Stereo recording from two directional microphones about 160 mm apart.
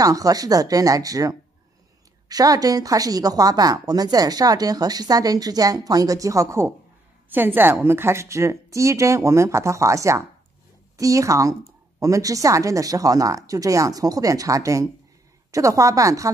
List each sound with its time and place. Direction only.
0.0 s a woman's voice: 20° right (ahead or behind)